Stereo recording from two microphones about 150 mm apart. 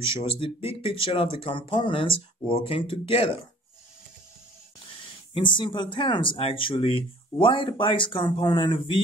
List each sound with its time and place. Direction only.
0.1 s speech: 40° left (ahead or behind)
5.3 s speech: 35° left (ahead or behind)